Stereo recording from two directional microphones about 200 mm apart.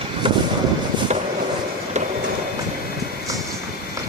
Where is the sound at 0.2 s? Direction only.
25° right (ahead or behind).